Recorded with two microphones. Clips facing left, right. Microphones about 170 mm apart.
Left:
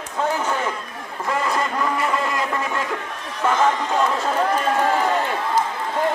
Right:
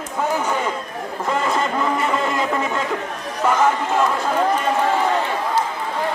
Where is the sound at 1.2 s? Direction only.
25° right (ahead or behind).